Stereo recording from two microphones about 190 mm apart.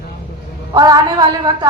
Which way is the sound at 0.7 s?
20° right (ahead or behind).